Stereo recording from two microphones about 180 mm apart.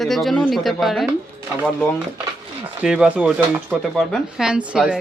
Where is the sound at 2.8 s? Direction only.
5° right (ahead or behind).